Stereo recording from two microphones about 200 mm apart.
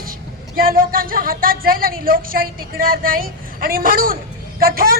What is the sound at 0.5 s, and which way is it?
A woman's voice, 45° right (ahead or behind).